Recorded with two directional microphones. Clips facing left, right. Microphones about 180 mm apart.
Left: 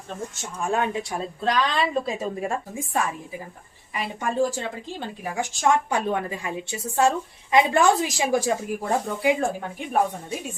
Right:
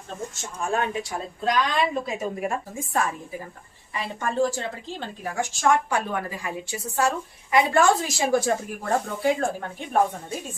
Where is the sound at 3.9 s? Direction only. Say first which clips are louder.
Left 1 dB; 15° left (ahead or behind).